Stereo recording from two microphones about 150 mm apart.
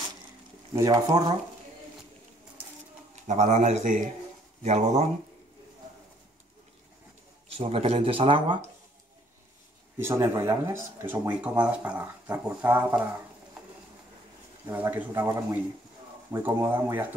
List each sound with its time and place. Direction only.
0.7 s speech: 25° right (ahead or behind)
3.3 s speech: 55° right (ahead or behind)
7.4 s speech: 40° right (ahead or behind)
9.9 s speech: 15° right (ahead or behind)
14.8 s speech: 10° right (ahead or behind)